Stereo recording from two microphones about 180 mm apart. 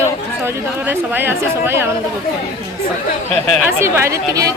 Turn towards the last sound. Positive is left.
turn(degrees=-20)  # may be behind; listen again after turning